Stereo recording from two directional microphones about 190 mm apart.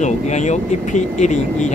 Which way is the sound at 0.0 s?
40° left (ahead or behind).